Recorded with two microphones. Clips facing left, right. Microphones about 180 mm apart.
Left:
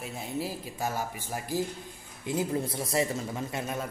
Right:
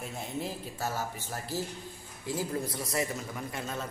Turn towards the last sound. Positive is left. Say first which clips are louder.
# left 3 dB
turn(degrees=15)  # may be behind; listen again after turning